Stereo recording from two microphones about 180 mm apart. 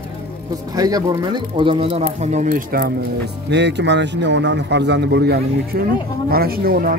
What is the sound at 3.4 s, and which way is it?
A man's voice, 75° right (ahead or behind).